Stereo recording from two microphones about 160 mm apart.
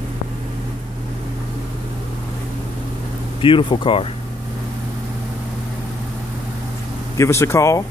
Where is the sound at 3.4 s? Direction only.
30° left (ahead or behind).